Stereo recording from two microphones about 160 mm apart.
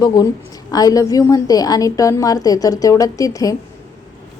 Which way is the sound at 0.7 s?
25° left (ahead or behind).